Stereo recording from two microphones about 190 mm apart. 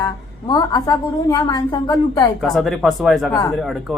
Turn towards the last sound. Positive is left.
turn(degrees=0)  # may be behind; listen again after turning